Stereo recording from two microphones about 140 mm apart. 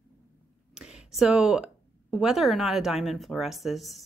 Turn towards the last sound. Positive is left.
turn(degrees=0)  # may be behind; listen again after turning